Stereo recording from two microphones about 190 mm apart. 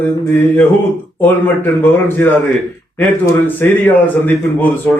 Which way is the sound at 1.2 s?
10° left (ahead or behind).